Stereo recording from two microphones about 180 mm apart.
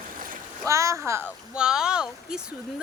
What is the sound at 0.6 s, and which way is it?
Speech, 15° right (ahead or behind).